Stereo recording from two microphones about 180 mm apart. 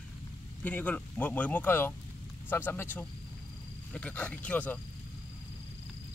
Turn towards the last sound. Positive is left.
turn(degrees=10)  # may be behind; listen again after turning